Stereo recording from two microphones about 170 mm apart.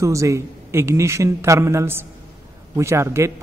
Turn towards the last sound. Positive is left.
turn(degrees=-15)  # may be behind; listen again after turning